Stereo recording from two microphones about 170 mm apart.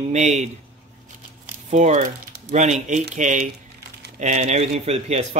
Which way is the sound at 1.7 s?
45° right (ahead or behind).